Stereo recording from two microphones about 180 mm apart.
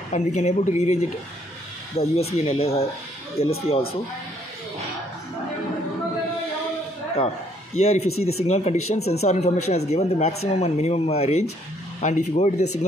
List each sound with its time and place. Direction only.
0.1 s speech: 40° left (ahead or behind)
7.8 s speech: 35° left (ahead or behind)